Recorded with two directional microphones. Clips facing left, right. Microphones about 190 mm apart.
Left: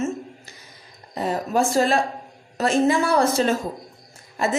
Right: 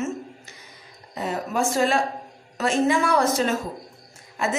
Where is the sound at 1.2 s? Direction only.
35° left (ahead or behind).